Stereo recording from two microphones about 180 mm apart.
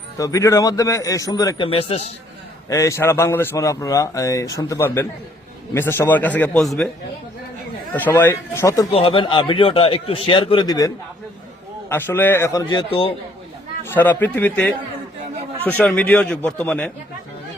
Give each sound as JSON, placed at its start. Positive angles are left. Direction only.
{"t": 0.2, "sound": "a man's voice", "side_deg": 15}
{"t": 2.6, "sound": "speech", "side_deg": 15}
{"t": 7.9, "sound": "speech", "side_deg": 10}
{"t": 8.9, "sound": "a man's voice", "side_deg": 30}
{"t": 13.8, "sound": "speech", "side_deg": 10}
{"t": 15.8, "sound": "speech", "side_deg": 5}